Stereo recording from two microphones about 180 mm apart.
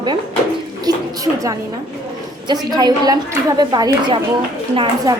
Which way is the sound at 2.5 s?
20° right (ahead or behind).